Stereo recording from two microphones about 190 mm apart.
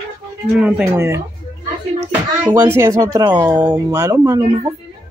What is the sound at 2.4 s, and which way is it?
Speech, 10° right (ahead or behind).